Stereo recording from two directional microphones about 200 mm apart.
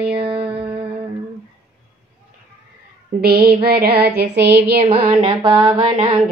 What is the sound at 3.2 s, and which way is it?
Female singing, 50° right (ahead or behind).